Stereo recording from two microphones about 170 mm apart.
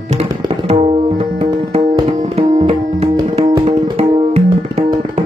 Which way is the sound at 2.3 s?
35° right (ahead or behind).